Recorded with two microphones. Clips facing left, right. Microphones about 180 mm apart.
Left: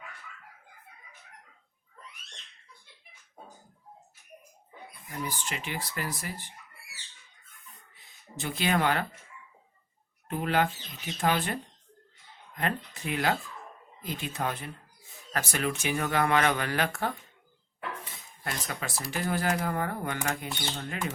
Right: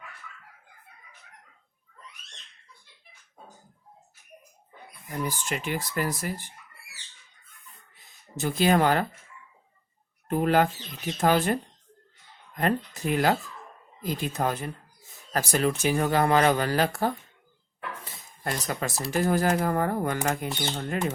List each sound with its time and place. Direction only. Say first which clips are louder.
5.0 s speech: right 5 dB; 45° right (ahead or behind)
8.4 s speech: right 6 dB; 40° right (ahead or behind)
10.2 s speech: right 5 dB; 40° right (ahead or behind)
12.5 s speech: right 6 dB; 40° right (ahead or behind)
18.0 s cutlery: right 5 dB; 40° right (ahead or behind)
19.1 s speech: right 6 dB; 40° right (ahead or behind)